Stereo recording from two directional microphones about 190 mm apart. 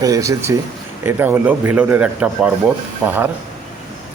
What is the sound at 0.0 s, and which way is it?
Speech, 15° right (ahead or behind).